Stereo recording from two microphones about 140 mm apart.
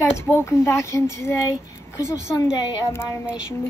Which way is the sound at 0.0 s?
15° left (ahead or behind).